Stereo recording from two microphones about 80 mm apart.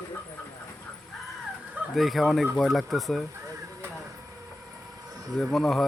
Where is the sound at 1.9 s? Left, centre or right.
Centre.